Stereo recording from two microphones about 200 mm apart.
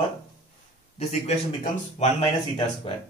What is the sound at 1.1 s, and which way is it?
Speech, 35° left (ahead or behind).